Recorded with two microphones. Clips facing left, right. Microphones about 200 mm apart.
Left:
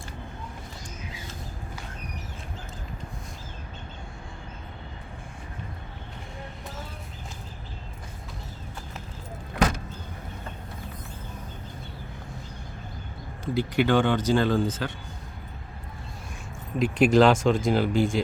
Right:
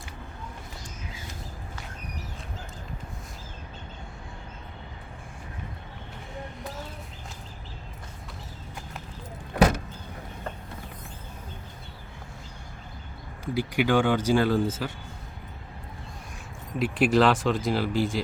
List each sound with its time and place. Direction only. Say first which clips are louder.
13.4 s speech: left 2 dB; 10° right (ahead or behind)
16.7 s speech: left 3 dB; 5° right (ahead or behind)